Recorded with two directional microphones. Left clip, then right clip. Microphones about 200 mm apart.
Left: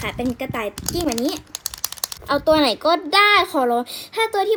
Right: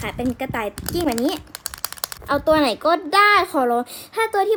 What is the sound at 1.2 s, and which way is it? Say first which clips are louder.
Speech: right 1 dB; 15° right (ahead or behind).